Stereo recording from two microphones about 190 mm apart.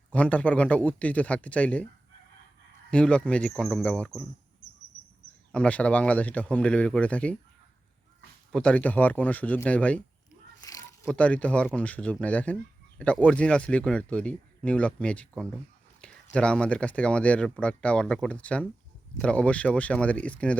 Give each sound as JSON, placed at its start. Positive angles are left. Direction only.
{"t": 0.1, "sound": "speech", "side_deg": 5}
{"t": 2.9, "sound": "speech", "side_deg": 5}
{"t": 5.5, "sound": "speech", "side_deg": 5}
{"t": 8.5, "sound": "speech", "side_deg": 5}
{"t": 10.6, "sound": "a sound", "side_deg": 20}
{"t": 11.0, "sound": "speech", "side_deg": 5}